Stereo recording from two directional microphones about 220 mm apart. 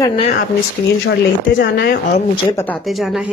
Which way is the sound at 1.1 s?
45° left (ahead or behind).